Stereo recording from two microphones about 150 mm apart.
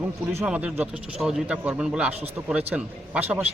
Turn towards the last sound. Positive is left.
turn(degrees=-10)  # may be behind; listen again after turning